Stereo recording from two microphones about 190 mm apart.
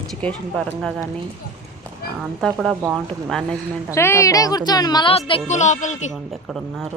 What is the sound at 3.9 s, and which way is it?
Speech, 15° left (ahead or behind).